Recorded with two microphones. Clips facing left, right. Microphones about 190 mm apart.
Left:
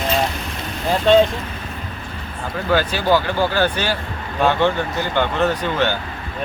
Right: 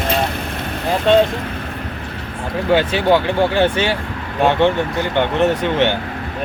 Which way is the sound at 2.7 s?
25° right (ahead or behind).